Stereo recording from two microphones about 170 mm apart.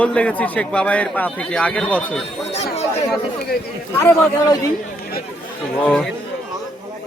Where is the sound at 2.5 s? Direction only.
40° left (ahead or behind).